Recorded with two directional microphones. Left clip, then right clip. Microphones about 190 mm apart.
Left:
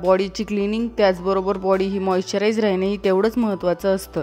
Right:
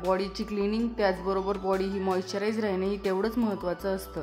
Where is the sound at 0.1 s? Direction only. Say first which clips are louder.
Left 10 dB; 40° left (ahead or behind).